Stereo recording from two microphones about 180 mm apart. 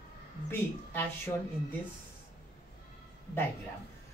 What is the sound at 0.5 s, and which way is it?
Speech, 10° left (ahead or behind).